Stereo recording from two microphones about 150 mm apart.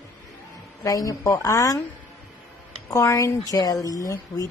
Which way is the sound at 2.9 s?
20° left (ahead or behind).